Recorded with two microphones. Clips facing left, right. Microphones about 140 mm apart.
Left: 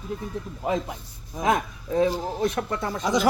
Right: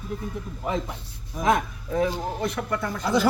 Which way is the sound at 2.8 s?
20° left (ahead or behind).